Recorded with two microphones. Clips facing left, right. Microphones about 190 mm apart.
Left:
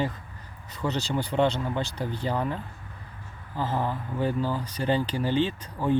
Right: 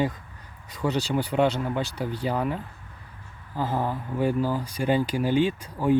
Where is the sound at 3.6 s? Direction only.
10° right (ahead or behind).